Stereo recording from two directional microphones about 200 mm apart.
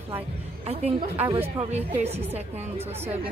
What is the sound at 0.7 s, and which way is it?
A woman's voice, 30° right (ahead or behind).